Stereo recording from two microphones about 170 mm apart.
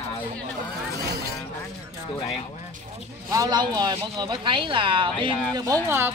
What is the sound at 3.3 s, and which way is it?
Speech, 20° right (ahead or behind).